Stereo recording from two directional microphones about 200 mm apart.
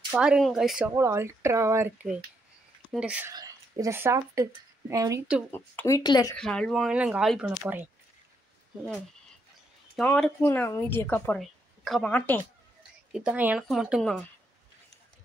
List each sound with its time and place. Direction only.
0.1 s speech: 5° right (ahead or behind)
3.3 s speech: 15° right (ahead or behind)
5.5 s speech: 10° left (ahead or behind)
6.3 s speech: 5° left (ahead or behind)
9.9 s speech: 5° left (ahead or behind)
13.1 s speech: 5° right (ahead or behind)